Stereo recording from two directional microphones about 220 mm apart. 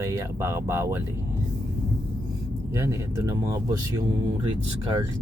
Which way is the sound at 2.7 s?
15° right (ahead or behind).